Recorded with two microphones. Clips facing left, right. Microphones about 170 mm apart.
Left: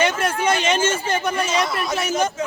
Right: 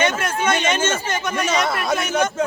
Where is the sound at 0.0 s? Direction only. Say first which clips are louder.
Left 1 dB; 35° left (ahead or behind).